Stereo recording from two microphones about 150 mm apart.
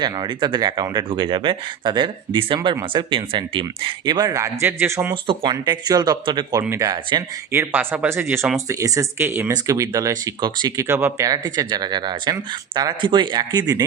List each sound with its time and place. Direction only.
0.0 s speech: 30° right (ahead or behind); by 5.1 s 15° right (ahead or behind)
5.2 s speech: 35° right (ahead or behind)
7.5 s speech: 15° right (ahead or behind)
10.8 s speech: 15° right (ahead or behind)